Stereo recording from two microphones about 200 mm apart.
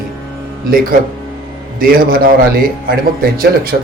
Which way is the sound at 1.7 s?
45° right (ahead or behind).